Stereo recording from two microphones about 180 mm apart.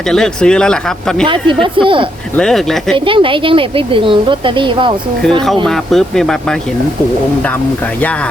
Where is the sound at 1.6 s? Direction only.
30° right (ahead or behind).